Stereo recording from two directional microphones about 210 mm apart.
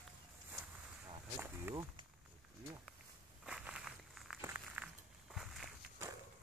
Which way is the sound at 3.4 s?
5° right (ahead or behind).